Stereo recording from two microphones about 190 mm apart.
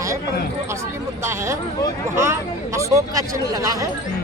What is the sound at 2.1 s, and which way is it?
Speech, 15° right (ahead or behind).